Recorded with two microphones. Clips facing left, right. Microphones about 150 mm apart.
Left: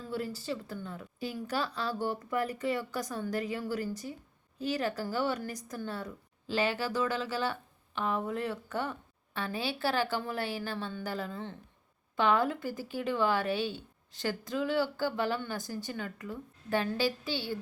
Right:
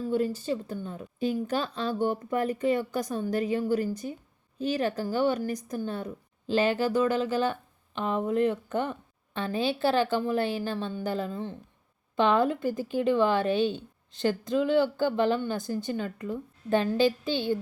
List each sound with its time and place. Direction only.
0.1 s a woman's voice: 20° right (ahead or behind)